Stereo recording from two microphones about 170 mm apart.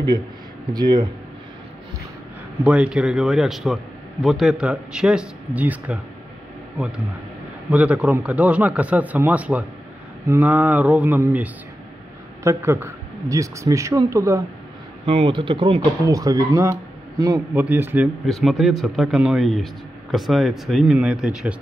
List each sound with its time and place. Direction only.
0.7 s speech: 25° right (ahead or behind)
2.6 s speech: 5° right (ahead or behind)
7.7 s speech: 5° right (ahead or behind)
15.0 s speech: 30° right (ahead or behind); by 18.1 s 10° right (ahead or behind)
18.2 s speech: centre (ahead or behind)